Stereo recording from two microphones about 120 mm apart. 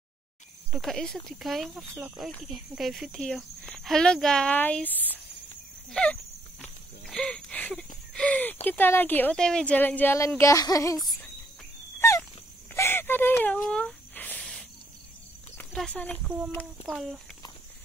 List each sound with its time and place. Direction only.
0.7 s speech: centre (ahead or behind)
4.6 s a woman's voice: 15° left (ahead or behind)
5.9 s a sound: 5° left (ahead or behind)
8.6 s a woman's voice: 15° left (ahead or behind)
12.0 s dog: 20° left (ahead or behind)
12.7 s a sound: 20° left (ahead or behind)
14.4 s cricket: 5° left (ahead or behind)
15.7 s a woman's voice: 5° left (ahead or behind)